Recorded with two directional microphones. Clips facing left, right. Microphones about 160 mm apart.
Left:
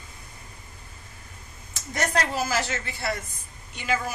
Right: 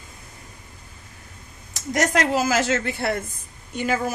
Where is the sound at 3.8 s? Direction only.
45° right (ahead or behind).